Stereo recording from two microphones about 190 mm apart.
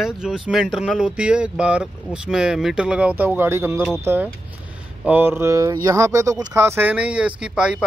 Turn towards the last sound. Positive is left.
turn(degrees=-5)  # may be behind; listen again after turning